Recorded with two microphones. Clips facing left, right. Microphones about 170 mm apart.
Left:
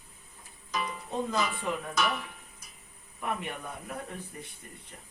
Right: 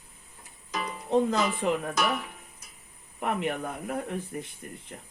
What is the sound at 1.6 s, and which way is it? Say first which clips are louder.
Speech: right 6 dB; 70° right (ahead or behind).